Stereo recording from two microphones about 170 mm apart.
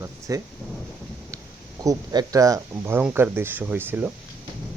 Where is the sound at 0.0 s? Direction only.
20° right (ahead or behind).